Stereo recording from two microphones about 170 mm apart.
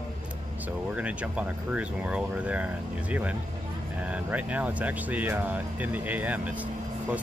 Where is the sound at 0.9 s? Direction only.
10° right (ahead or behind).